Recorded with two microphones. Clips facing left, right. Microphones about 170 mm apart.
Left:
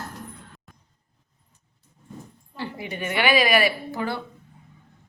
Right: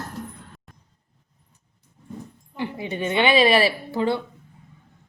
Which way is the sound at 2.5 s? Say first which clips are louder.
Right 4 dB; 20° right (ahead or behind).